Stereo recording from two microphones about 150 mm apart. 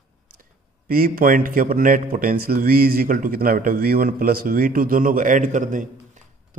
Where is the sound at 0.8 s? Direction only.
70° right (ahead or behind).